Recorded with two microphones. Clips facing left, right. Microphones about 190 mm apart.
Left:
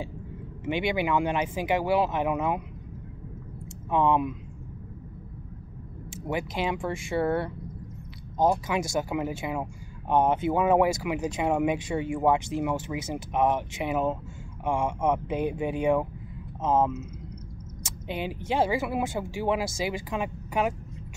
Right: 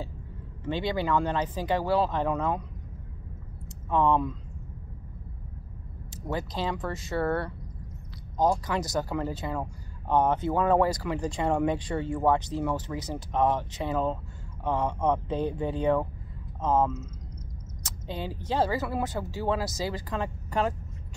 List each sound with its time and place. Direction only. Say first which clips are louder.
0.7 s speech: left 1 dB; 15° left (ahead or behind)
3.9 s speech: left 1 dB; 15° left (ahead or behind)
6.2 s speech: left 2 dB; 15° left (ahead or behind)
8.7 s speech: left 1 dB; 15° left (ahead or behind)
18.0 s speech: left 3 dB; 20° left (ahead or behind)